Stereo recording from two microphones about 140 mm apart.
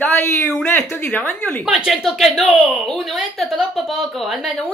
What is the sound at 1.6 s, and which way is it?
A woman's voice, centre (ahead or behind).